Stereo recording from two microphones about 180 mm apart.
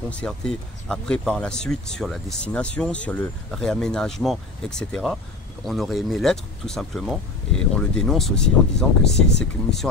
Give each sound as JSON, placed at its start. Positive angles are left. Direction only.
{"t": 0.1, "sound": "speech", "side_deg": 5}